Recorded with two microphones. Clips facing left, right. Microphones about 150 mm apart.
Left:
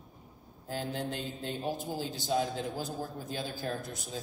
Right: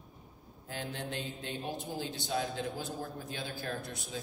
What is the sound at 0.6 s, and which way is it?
A man's voice, 40° left (ahead or behind).